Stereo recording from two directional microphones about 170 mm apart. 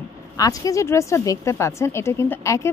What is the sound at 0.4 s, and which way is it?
A woman's voice, 20° left (ahead or behind).